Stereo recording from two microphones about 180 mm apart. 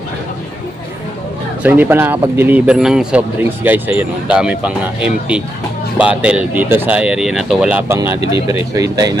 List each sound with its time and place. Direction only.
1.6 s speech: 10° right (ahead or behind)